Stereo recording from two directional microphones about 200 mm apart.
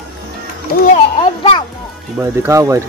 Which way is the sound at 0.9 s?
25° left (ahead or behind).